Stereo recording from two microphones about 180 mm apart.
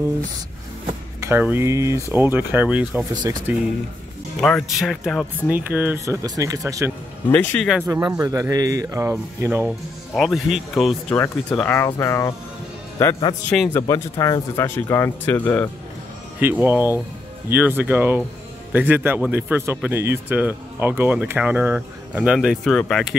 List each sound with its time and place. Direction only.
1.2 s a man's voice: 10° right (ahead or behind)
4.4 s a man's voice: 5° left (ahead or behind); by 6.9 s 20° right (ahead or behind)
7.2 s speech: 10° left (ahead or behind)
7.8 s a man's voice: 20° right (ahead or behind)
9.7 s speech: centre (ahead or behind)
11.1 s speech: 10° left (ahead or behind)
13.8 s speech: 20° left (ahead or behind)
16.3 s a man's voice: 10° right (ahead or behind)